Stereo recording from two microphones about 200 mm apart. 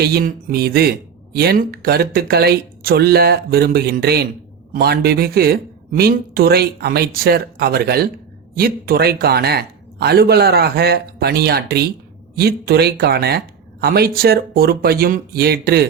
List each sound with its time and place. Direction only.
0.0 s speech: 50° right (ahead or behind)